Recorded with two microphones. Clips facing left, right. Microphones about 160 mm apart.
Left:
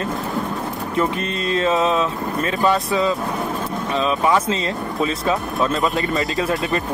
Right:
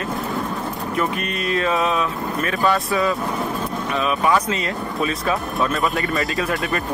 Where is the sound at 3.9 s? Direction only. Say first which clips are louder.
Left 1 dB; 25° left (ahead or behind).